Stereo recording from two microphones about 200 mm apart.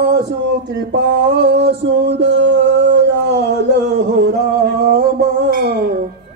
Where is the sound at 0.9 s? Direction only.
60° right (ahead or behind).